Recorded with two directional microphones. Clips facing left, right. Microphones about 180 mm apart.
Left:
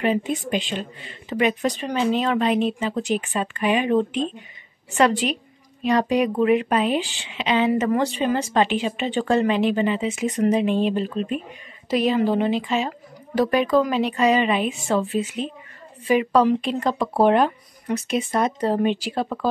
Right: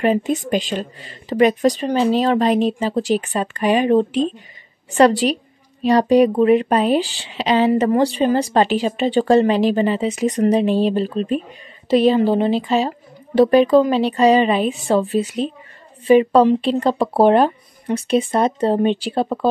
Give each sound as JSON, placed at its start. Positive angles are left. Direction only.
{"t": 0.0, "sound": "a woman's voice", "side_deg": -40}